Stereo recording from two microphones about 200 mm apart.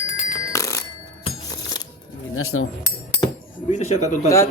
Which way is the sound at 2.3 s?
90° left.